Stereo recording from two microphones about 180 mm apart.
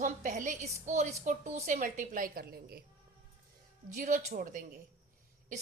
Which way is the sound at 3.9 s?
45° right (ahead or behind).